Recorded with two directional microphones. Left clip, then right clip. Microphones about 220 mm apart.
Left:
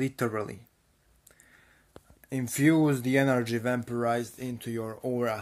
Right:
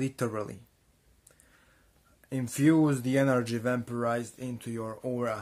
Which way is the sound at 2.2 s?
10° right (ahead or behind).